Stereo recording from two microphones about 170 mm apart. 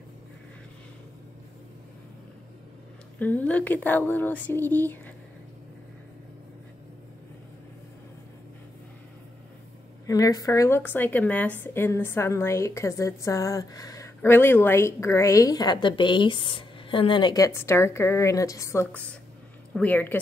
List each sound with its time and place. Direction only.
3.2 s a woman's voice: 10° left (ahead or behind)
10.0 s a woman's voice: 20° left (ahead or behind)